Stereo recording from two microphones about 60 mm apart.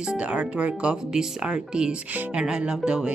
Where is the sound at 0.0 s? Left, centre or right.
Centre.